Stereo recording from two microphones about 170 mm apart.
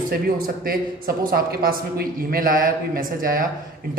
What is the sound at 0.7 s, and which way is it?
A man's voice, 60° right (ahead or behind).